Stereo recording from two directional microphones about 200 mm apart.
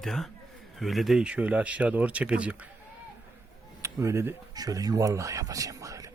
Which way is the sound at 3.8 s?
15° right (ahead or behind).